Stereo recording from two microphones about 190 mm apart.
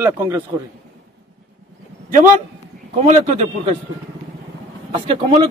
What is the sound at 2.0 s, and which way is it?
A man's voice, 45° right (ahead or behind).